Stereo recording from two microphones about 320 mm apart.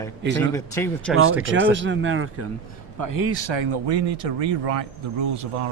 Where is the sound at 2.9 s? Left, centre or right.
Right.